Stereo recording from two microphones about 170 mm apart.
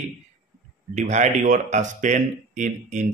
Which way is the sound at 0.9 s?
45° right (ahead or behind).